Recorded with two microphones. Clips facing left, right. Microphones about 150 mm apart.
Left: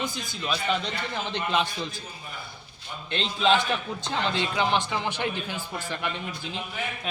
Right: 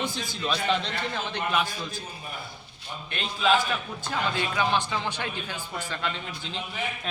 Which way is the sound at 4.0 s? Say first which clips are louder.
Left 1 dB; 20° left (ahead or behind).